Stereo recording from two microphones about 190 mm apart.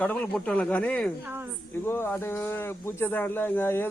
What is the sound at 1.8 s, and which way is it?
Speech, 10° left (ahead or behind).